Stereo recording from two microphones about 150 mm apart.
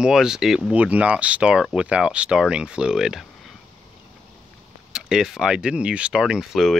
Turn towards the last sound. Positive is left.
turn(degrees=0)  # may be behind; listen again after turning